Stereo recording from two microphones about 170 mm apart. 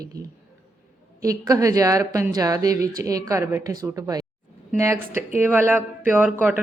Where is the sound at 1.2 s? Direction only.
20° right (ahead or behind).